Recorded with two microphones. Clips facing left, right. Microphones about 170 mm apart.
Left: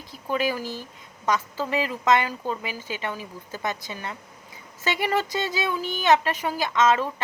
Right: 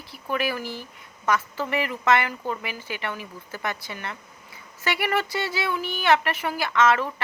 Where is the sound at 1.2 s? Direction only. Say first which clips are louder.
Even; 15° left (ahead or behind).